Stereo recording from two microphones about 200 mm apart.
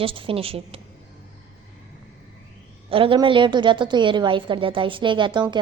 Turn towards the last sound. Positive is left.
turn(degrees=-20)  # may be behind; listen again after turning